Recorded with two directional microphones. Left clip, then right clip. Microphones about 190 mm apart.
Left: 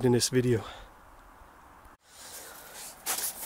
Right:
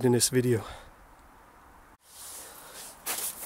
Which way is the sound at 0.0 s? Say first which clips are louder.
Right 1 dB; centre (ahead or behind).